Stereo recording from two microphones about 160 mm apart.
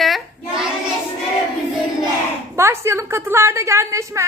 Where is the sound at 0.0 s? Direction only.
Centre (ahead or behind).